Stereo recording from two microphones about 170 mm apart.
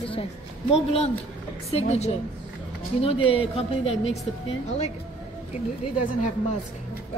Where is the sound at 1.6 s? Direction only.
40° left (ahead or behind).